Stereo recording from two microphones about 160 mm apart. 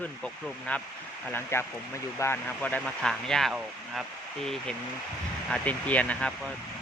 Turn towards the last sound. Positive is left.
turn(degrees=10)  # may be behind; listen again after turning